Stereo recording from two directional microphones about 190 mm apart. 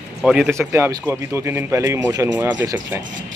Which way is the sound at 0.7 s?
15° right (ahead or behind).